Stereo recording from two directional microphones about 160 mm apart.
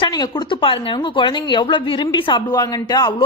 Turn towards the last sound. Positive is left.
turn(degrees=25)  # may be behind; listen again after turning